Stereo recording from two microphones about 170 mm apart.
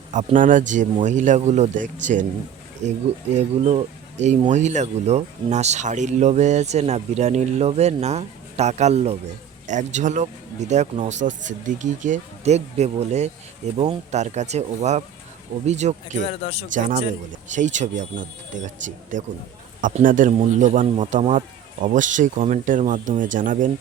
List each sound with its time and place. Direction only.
0.1 s speech: 45° right (ahead or behind)
16.2 s speech: 35° left (ahead or behind)
17.5 s speech: 45° right (ahead or behind)